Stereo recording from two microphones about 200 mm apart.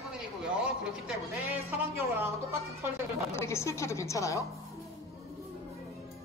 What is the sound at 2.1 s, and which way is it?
Speech, 10° right (ahead or behind).